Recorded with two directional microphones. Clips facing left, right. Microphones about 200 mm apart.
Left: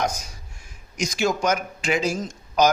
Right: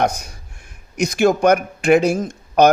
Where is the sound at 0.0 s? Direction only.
60° right (ahead or behind).